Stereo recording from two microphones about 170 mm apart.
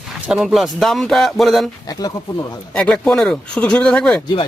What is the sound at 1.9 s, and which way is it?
Speech, 20° left (ahead or behind).